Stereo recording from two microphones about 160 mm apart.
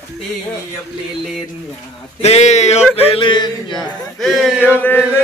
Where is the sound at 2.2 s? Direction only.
45° left (ahead or behind).